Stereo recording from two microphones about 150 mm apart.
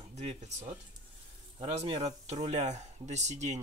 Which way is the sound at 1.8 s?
45° right (ahead or behind).